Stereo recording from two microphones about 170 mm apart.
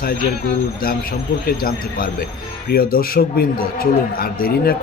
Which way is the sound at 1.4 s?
60° left (ahead or behind).